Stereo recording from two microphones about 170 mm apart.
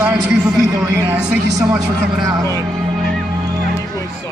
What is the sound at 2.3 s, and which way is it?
Speech, 20° right (ahead or behind).